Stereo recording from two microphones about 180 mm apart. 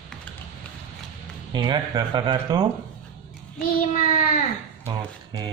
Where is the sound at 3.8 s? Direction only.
45° left (ahead or behind).